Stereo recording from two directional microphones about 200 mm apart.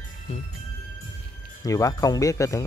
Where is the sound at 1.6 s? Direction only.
15° left (ahead or behind).